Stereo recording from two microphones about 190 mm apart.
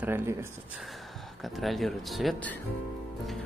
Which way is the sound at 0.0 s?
10° right (ahead or behind).